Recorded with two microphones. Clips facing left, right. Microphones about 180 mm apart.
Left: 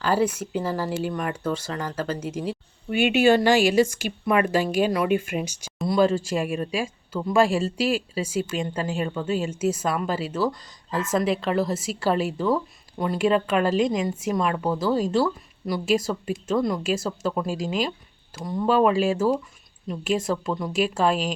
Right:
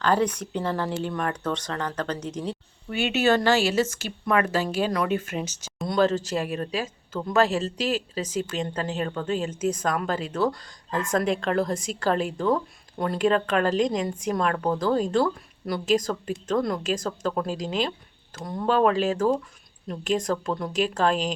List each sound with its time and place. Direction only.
0.0 s a woman's voice: 5° left (ahead or behind)